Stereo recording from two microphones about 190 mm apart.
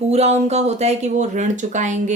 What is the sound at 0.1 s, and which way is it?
Speech, 35° right (ahead or behind).